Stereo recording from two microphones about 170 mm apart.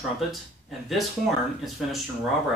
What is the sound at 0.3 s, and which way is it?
Speech, centre (ahead or behind).